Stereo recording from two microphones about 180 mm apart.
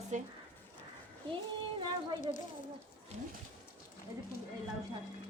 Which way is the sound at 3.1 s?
35° right (ahead or behind).